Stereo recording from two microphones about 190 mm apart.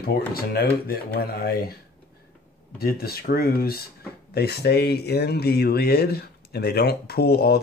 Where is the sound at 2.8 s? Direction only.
55° left (ahead or behind).